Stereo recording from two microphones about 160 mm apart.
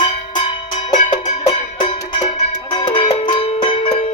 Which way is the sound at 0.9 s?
50° left (ahead or behind).